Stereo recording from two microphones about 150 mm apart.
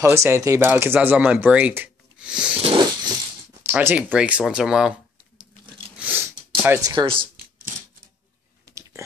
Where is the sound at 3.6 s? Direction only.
15° right (ahead or behind).